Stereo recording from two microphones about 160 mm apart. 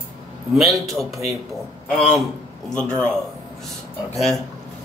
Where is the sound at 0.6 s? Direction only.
Centre (ahead or behind).